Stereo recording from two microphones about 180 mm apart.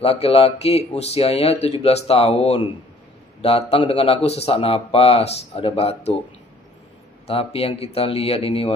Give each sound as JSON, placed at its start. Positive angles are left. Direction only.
{"t": 0.0, "sound": "a man's voice", "side_deg": 35}
{"t": 7.2, "sound": "a man's voice", "side_deg": 35}